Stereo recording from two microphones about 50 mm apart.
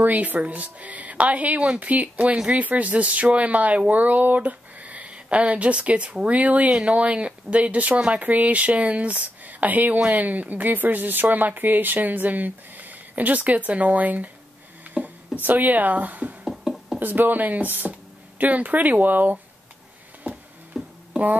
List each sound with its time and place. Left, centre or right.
0.0 s speech: right
2.3 s speech: centre
2.6 s speech: right
16.4 s a sound: centre
17.0 s speech: right
20.2 s music: centre